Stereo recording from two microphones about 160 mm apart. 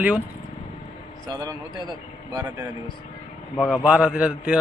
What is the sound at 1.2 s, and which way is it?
Speech, 20° right (ahead or behind).